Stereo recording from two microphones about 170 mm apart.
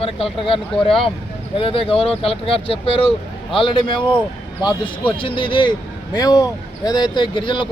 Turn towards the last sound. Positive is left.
turn(degrees=30)  # may be behind; listen again after turning